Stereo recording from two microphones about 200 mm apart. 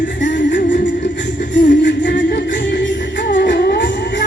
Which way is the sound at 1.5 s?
65° left (ahead or behind).